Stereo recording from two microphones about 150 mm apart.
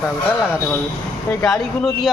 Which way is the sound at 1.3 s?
5° left (ahead or behind).